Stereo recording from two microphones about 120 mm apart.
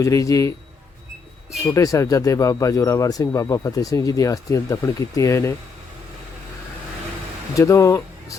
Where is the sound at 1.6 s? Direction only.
25° left (ahead or behind).